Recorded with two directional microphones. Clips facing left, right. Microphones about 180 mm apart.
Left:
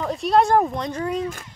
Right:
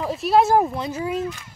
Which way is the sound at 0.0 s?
5° right (ahead or behind).